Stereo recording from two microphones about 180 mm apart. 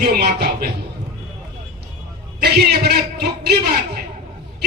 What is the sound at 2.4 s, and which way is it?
A man's voice, 65° right (ahead or behind).